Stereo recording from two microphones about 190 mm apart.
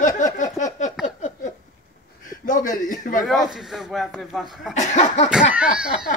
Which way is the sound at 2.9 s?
45° left (ahead or behind).